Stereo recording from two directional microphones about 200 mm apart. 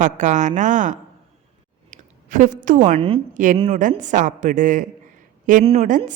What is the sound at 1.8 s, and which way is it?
Clicking, 40° right (ahead or behind).